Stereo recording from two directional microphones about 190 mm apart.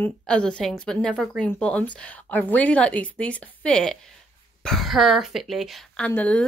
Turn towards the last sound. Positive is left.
turn(degrees=5)  # may be behind; listen again after turning